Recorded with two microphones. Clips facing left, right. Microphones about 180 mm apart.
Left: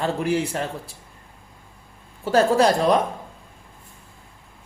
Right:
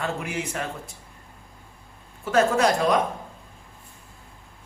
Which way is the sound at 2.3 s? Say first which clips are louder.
Left 3 dB; 30° left (ahead or behind).